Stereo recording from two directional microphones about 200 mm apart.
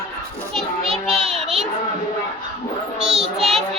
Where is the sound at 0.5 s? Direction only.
Centre (ahead or behind).